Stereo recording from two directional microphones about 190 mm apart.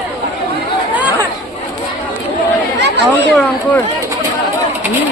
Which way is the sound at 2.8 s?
65° right (ahead or behind).